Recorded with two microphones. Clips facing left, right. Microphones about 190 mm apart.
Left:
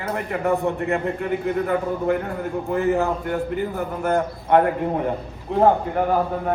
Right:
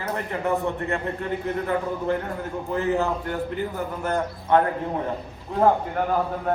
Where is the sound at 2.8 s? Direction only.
15° left (ahead or behind).